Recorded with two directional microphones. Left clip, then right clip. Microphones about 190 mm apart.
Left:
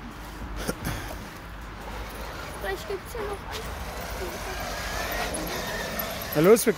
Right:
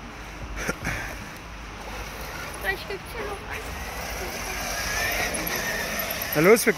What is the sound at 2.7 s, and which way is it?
Dog, 45° left (ahead or behind).